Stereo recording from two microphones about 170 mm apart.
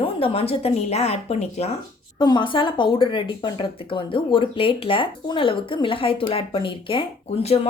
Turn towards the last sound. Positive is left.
turn(degrees=35)  # may be behind; listen again after turning